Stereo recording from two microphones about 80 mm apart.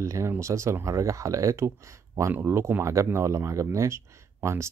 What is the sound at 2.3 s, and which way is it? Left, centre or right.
Speech, right.